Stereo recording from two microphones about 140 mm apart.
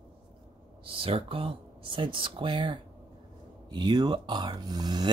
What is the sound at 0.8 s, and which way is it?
Speech, 40° right (ahead or behind).